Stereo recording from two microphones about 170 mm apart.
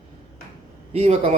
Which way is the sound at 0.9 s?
40° right (ahead or behind).